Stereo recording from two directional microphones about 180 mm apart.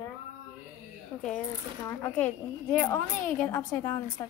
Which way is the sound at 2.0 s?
10° left (ahead or behind).